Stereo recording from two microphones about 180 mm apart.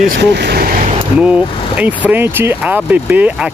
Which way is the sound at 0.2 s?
70° right (ahead or behind).